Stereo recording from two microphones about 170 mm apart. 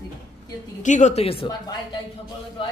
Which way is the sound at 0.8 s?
45° left (ahead or behind).